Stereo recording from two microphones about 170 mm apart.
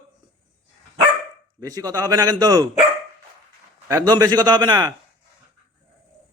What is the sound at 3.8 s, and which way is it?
A man's voice, 20° right (ahead or behind).